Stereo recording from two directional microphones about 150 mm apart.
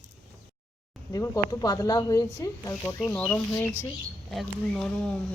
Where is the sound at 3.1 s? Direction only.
10° left (ahead or behind).